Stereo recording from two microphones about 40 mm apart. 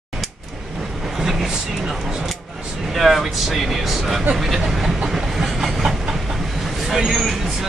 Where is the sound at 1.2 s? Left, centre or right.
Centre.